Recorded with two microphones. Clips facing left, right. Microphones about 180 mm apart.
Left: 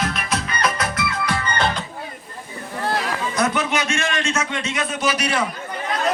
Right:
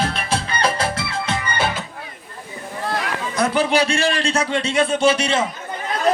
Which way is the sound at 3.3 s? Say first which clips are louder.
Right 5 dB; 30° right (ahead or behind).